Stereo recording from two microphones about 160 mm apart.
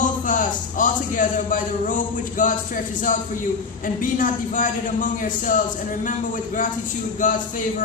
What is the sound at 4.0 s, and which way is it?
A man's voice, 55° left (ahead or behind).